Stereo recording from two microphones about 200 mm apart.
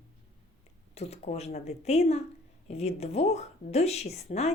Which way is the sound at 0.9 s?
30° left (ahead or behind).